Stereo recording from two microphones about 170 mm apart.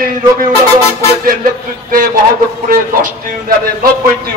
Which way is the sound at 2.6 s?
55° right (ahead or behind).